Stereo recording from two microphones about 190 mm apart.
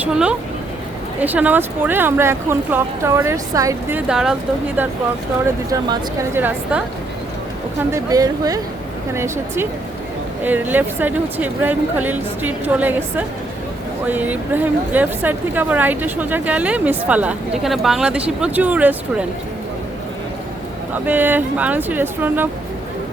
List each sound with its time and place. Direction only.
0.0 s a woman's voice: 5° right (ahead or behind)
5.7 s a woman's voice: 15° right (ahead or behind)
7.9 s a woman's voice: 15° right (ahead or behind)
21.1 s a woman's voice: 10° right (ahead or behind)